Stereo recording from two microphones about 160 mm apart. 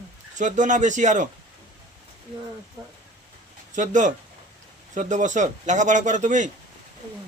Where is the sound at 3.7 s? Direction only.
50° right (ahead or behind).